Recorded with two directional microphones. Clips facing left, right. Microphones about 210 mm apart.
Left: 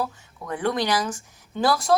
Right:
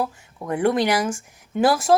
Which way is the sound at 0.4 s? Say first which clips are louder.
Right 5 dB; 30° right (ahead or behind).